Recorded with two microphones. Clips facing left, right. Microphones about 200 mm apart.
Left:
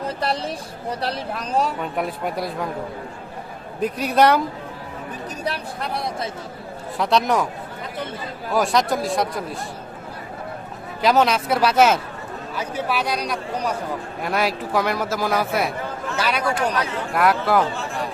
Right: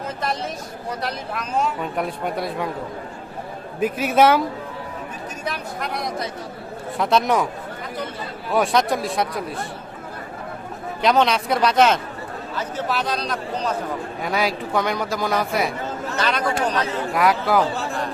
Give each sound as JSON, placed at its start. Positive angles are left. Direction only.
{"t": 0.2, "sound": "speech", "side_deg": 35}
{"t": 1.8, "sound": "a man's voice", "side_deg": 0}
{"t": 3.8, "sound": "a man's voice", "side_deg": -5}
{"t": 5.5, "sound": "speech", "side_deg": 30}
{"t": 7.0, "sound": "a man's voice", "side_deg": 0}
{"t": 8.5, "sound": "a man's voice", "side_deg": 0}
{"t": 11.0, "sound": "a man's voice", "side_deg": 5}
{"t": 14.2, "sound": "a man's voice", "side_deg": 0}